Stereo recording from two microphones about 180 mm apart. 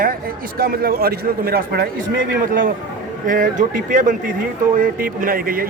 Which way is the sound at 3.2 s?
50° right (ahead or behind).